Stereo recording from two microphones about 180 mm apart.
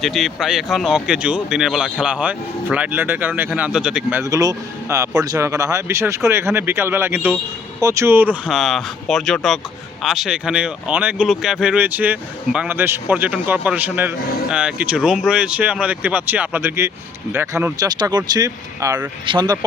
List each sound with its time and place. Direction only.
0.0 s speech: centre (ahead or behind); by 19.5 s 25° right (ahead or behind)